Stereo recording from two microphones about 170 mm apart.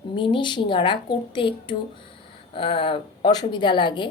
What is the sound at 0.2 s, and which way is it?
A woman's voice, 30° left (ahead or behind).